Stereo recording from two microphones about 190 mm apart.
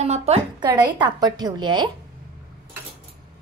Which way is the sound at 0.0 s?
35° right (ahead or behind).